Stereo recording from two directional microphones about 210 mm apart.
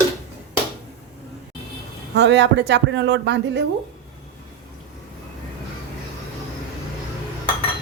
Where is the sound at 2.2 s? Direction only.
55° right (ahead or behind).